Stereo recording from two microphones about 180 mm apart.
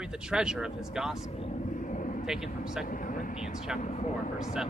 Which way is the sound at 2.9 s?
50° left (ahead or behind).